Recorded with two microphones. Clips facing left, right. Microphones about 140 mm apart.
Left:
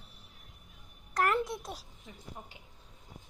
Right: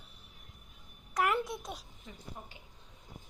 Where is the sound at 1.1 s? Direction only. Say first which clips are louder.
Left 1 dB; centre (ahead or behind).